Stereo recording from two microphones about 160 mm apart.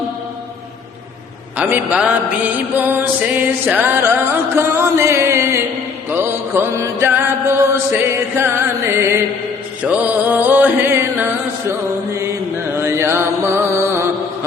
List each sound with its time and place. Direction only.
1.5 s music: 10° right (ahead or behind)
6.1 s mantra: 15° right (ahead or behind)
9.8 s music: 10° right (ahead or behind)
12.7 s mantra: 15° right (ahead or behind)